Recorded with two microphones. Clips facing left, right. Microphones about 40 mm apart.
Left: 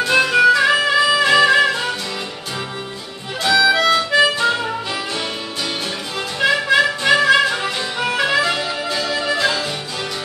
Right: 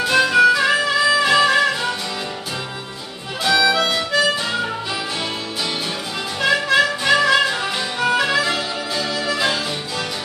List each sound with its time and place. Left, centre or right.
0.1 s music: centre
3.4 s music: centre
4.1 s harmonica: left
6.4 s music: centre